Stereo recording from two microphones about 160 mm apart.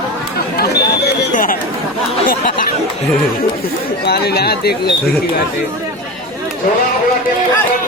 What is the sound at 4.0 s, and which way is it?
Speech, 80° left.